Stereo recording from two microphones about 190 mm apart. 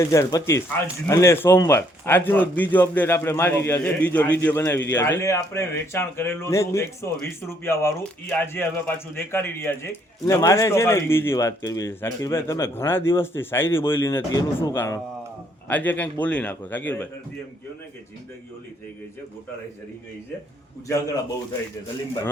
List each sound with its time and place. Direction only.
0.0 s a man's voice: 15° left (ahead or behind)
20.8 s a man's voice: 15° left (ahead or behind)